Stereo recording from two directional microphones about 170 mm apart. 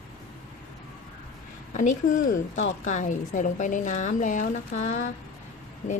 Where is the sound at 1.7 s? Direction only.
50° left (ahead or behind).